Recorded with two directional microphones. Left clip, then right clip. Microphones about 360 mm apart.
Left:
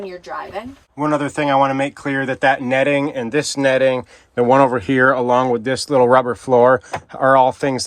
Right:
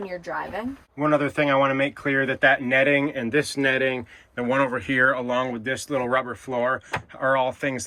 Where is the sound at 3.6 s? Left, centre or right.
Left.